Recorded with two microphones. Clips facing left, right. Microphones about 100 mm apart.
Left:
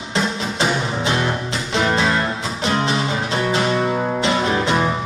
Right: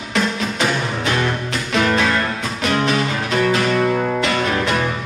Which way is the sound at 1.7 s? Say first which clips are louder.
Right 1 dB; 20° left (ahead or behind).